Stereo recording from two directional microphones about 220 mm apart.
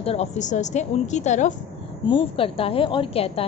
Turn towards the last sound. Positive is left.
turn(degrees=25)  # may be behind; listen again after turning